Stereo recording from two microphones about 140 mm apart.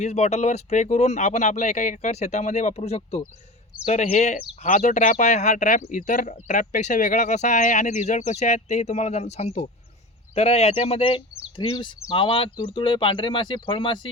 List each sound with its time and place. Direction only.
0.0 s speech: 50° left (ahead or behind); by 14.1 s 35° left (ahead or behind)